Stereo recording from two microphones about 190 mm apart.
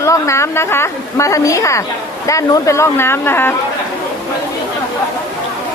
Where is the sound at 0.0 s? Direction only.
15° left (ahead or behind).